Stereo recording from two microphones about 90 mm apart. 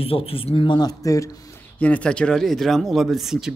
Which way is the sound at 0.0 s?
90° left.